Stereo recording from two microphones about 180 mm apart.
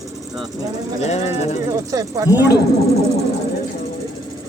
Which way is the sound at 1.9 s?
20° right (ahead or behind).